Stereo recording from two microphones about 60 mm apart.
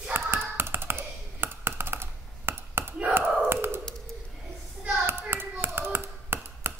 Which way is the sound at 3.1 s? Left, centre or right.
Right.